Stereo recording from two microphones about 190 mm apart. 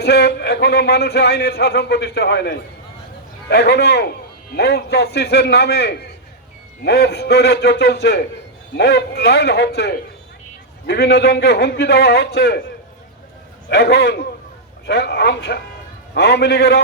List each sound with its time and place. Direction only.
0.0 s speech: 60° left (ahead or behind)
13.7 s speech: 60° left (ahead or behind)